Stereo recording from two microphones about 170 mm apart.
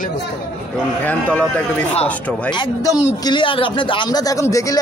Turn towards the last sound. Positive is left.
turn(degrees=20)  # may be behind; listen again after turning